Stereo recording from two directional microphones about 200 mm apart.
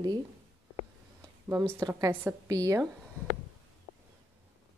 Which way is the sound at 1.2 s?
15° right (ahead or behind).